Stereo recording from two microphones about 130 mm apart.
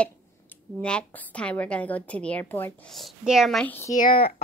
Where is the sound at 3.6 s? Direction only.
15° left (ahead or behind).